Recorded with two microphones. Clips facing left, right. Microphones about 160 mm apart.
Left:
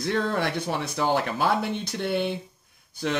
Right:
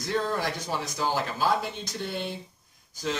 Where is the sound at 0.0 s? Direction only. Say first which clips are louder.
Left 3 dB; 60° left (ahead or behind).